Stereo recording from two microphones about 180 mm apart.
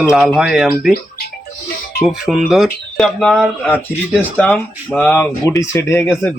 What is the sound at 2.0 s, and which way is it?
Speech, centre (ahead or behind).